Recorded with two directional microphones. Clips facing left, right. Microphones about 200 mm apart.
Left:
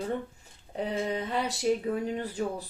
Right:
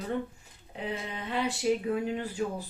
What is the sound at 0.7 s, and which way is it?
Speech, 40° left (ahead or behind).